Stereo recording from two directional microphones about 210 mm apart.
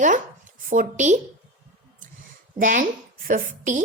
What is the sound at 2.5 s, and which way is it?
A woman's voice, 40° right (ahead or behind).